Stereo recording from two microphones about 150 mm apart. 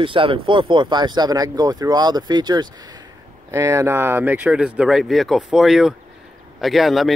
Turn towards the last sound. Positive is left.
turn(degrees=0)  # may be behind; listen again after turning